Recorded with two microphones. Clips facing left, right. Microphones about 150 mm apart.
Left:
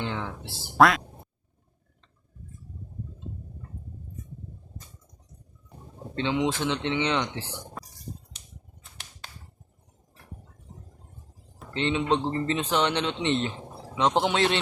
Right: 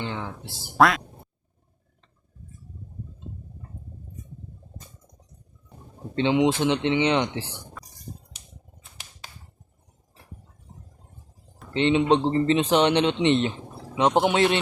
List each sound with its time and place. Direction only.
0.0 s speech: 5° right (ahead or behind)
6.1 s speech: 15° right (ahead or behind)
8.8 s a sound: centre (ahead or behind)
11.7 s speech: 20° right (ahead or behind)